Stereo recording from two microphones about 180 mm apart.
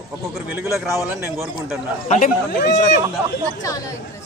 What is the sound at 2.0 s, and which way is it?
Speech, 40° left (ahead or behind).